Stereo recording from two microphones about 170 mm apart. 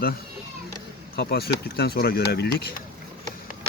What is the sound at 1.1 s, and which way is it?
Speech, 65° left (ahead or behind).